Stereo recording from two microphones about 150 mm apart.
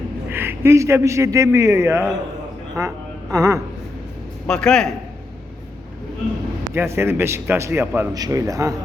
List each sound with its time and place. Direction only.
0.3 s a man's voice: 15° right (ahead or behind)
4.4 s a man's voice: 5° left (ahead or behind)
6.7 s a man's voice: 15° right (ahead or behind)